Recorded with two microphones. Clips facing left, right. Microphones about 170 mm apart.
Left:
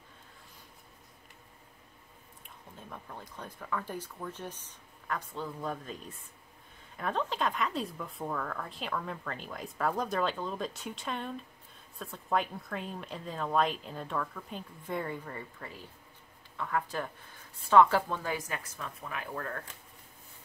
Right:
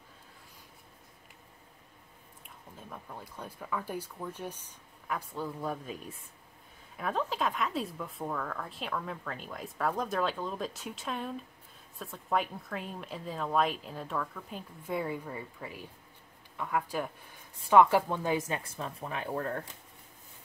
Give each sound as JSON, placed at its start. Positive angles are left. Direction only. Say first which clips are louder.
{"t": 2.9, "sound": "speech", "louder": "right 1 dB", "side_deg": -5}